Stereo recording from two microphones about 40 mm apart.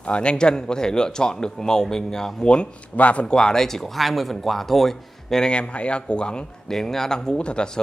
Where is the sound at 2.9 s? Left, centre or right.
Left.